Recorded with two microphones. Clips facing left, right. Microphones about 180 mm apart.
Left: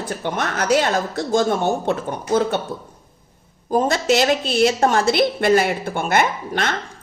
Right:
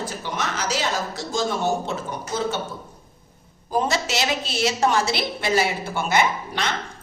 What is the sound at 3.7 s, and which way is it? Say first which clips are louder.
A woman's voice: left 6 dB; 50° left (ahead or behind).